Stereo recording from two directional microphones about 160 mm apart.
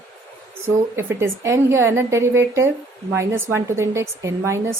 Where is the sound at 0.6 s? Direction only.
15° right (ahead or behind).